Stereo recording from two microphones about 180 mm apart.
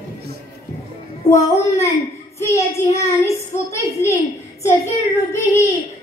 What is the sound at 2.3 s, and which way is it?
Child singing, 15° left (ahead or behind).